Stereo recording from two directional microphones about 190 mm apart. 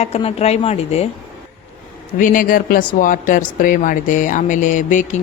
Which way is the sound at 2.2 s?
45° left (ahead or behind).